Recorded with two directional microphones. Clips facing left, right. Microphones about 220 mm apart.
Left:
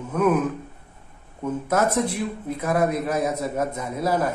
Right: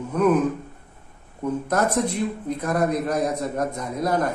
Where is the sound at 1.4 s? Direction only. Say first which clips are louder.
Even; 5° left (ahead or behind).